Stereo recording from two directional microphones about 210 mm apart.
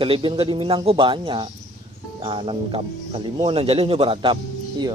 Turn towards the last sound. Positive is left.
turn(degrees=-20)  # may be behind; listen again after turning